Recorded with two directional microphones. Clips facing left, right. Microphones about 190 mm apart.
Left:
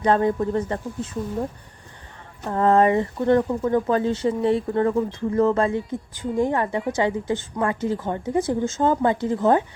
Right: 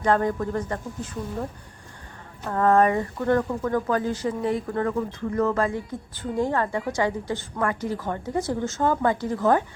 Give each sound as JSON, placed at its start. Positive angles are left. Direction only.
{"t": 0.0, "sound": "speech", "side_deg": 20}
{"t": 2.5, "sound": "speech", "side_deg": 25}